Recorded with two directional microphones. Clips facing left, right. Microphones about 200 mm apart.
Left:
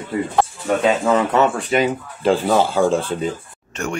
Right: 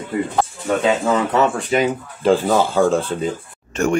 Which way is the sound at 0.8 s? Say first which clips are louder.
Left 1 dB; 30° left (ahead or behind).